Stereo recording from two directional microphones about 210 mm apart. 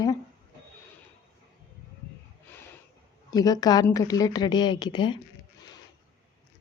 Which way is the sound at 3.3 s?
20° left (ahead or behind).